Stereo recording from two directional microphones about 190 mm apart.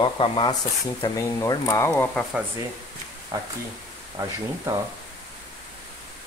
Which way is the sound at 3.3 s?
15° right (ahead or behind).